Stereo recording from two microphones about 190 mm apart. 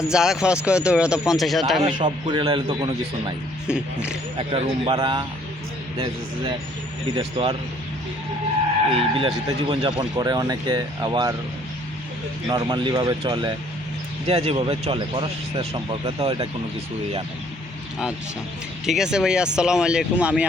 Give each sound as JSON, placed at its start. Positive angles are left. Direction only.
{"t": 0.1, "sound": "speech", "side_deg": -5}
{"t": 1.8, "sound": "a man's voice", "side_deg": -35}
{"t": 3.7, "sound": "speech", "side_deg": -5}
{"t": 4.4, "sound": "speech", "side_deg": -30}
{"t": 7.2, "sound": "speech", "side_deg": -25}
{"t": 8.9, "sound": "speech", "side_deg": -30}
{"t": 12.5, "sound": "speech", "side_deg": -20}
{"t": 18.9, "sound": "speech", "side_deg": -5}